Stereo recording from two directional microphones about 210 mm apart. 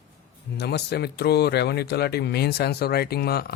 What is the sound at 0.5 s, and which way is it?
Speech, 50° left (ahead or behind).